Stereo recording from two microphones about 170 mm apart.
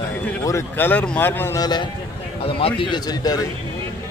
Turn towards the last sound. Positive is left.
turn(degrees=20)  # may be behind; listen again after turning